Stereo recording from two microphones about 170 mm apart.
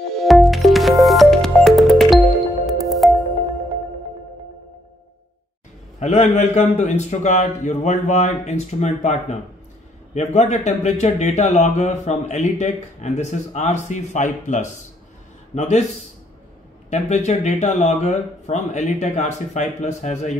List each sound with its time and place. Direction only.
0.1 s music: centre (ahead or behind)
5.9 s a man's voice: 40° left (ahead or behind)